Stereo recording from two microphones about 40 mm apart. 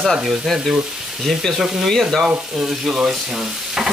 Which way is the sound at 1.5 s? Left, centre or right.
Centre.